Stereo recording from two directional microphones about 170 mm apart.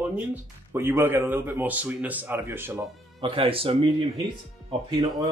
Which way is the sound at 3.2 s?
30° right (ahead or behind).